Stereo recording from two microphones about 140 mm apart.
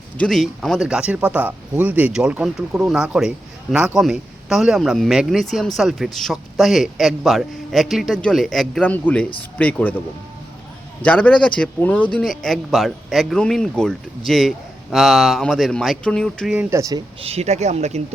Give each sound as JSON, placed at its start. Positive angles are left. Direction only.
{"t": 0.2, "sound": "speech", "side_deg": 0}
{"t": 11.0, "sound": "speech", "side_deg": 10}
{"t": 16.6, "sound": "speech", "side_deg": -20}
{"t": 17.2, "sound": "speech", "side_deg": -45}